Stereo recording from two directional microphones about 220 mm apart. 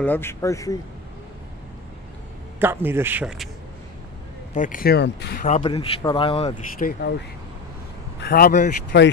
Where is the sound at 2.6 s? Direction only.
10° right (ahead or behind).